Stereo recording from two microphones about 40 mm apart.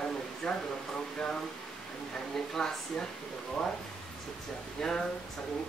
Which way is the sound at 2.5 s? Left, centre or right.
Centre.